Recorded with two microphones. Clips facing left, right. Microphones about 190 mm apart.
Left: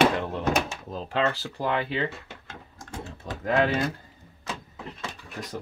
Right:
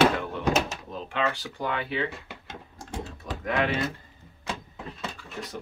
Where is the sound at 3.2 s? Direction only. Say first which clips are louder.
Left 4 dB; 30° left (ahead or behind).